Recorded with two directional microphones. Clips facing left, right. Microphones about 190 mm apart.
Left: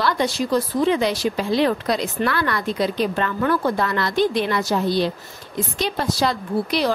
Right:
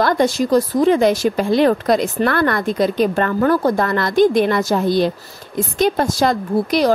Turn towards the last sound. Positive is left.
turn(degrees=-45)  # may be behind; listen again after turning